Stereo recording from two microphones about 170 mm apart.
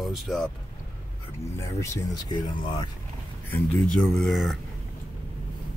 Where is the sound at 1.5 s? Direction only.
15° left (ahead or behind).